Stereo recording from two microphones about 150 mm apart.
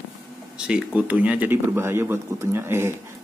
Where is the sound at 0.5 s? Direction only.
5° right (ahead or behind).